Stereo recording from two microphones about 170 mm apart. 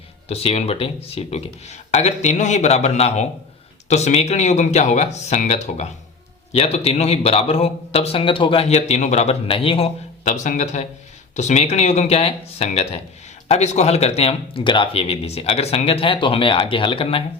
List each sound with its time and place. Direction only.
0.3 s a man's voice: 35° left (ahead or behind)